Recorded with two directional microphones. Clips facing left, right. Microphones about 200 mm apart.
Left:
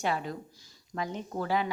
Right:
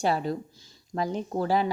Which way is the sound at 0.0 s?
35° right (ahead or behind).